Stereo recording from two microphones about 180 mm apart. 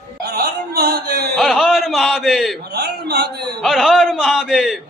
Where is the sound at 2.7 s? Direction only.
65° right (ahead or behind).